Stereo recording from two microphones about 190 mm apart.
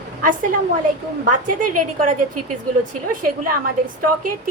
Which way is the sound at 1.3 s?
45° right (ahead or behind).